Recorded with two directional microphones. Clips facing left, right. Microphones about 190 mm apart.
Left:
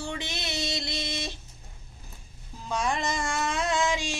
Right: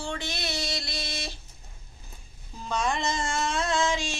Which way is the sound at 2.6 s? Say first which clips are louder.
Right 1 dB; 10° left (ahead or behind).